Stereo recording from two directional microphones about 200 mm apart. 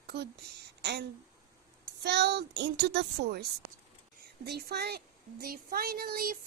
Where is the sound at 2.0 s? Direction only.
55° right (ahead or behind).